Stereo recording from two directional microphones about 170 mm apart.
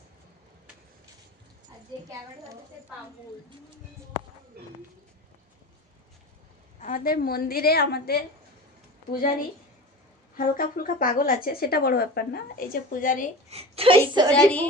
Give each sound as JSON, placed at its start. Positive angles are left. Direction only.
{"t": 4.6, "sound": "speech", "side_deg": -65}
{"t": 6.8, "sound": "speech", "side_deg": 55}
{"t": 10.3, "sound": "speech", "side_deg": 55}
{"t": 13.5, "sound": "a woman's voice", "side_deg": -35}
{"t": 14.3, "sound": "a woman's voice", "side_deg": 10}